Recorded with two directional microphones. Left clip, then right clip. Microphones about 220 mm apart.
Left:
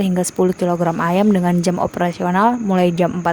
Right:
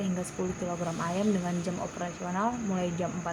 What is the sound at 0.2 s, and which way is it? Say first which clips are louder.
Speech: left 16 dB; 50° left (ahead or behind).